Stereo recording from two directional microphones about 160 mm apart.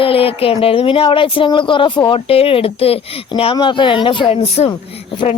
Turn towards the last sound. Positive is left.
turn(degrees=40)  # may be behind; listen again after turning